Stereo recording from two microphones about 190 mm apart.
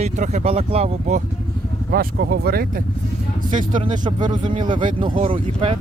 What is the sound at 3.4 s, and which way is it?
Speech, 40° right (ahead or behind).